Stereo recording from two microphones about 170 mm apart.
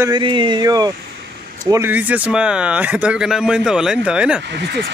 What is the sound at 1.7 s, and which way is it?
Speech, 10° right (ahead or behind).